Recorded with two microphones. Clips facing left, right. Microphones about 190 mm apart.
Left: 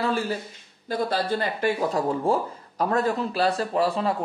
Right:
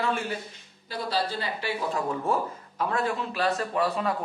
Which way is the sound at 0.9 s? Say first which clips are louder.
Left 4 dB; 55° left (ahead or behind).